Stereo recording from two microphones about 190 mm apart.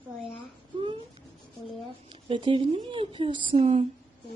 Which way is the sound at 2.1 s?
25° right (ahead or behind).